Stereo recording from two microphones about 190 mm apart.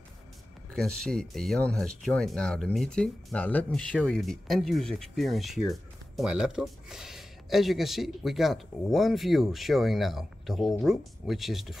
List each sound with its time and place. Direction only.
0.7 s speech: 5° left (ahead or behind)